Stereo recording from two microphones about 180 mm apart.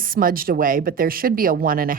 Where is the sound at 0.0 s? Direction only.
50° right (ahead or behind).